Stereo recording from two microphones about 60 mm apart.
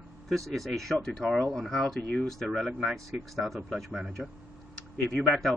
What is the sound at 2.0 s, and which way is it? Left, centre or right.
Speech, left.